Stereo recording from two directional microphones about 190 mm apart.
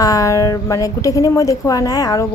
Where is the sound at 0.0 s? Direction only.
20° left (ahead or behind).